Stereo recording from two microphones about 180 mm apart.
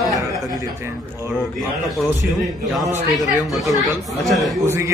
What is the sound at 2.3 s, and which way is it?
Speech, centre (ahead or behind).